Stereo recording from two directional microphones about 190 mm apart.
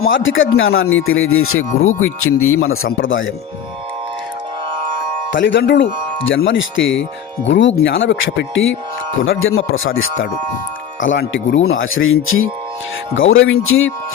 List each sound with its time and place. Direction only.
0.0 s speech: 90° left
5.3 s speech: 75° left (ahead or behind)
6.3 s speech: 85° left
7.4 s speech: 75° left (ahead or behind)
9.2 s speech: 90° left